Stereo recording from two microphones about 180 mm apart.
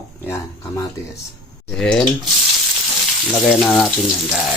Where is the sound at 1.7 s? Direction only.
5° left (ahead or behind).